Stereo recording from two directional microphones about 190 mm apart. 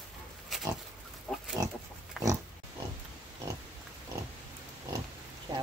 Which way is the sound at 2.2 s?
5° right (ahead or behind).